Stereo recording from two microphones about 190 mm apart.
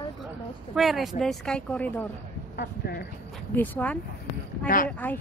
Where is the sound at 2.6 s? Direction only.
55° left (ahead or behind).